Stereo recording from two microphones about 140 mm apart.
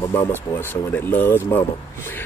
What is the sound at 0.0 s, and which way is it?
Speech, 20° left (ahead or behind).